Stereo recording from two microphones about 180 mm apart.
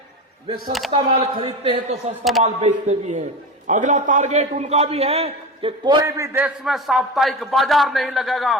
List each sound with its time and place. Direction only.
0.9 s a man's voice: 30° right (ahead or behind); by 6.5 s 15° right (ahead or behind)
6.7 s speech: centre (ahead or behind)